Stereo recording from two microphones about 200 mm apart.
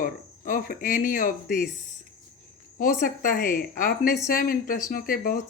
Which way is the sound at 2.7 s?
45° left (ahead or behind).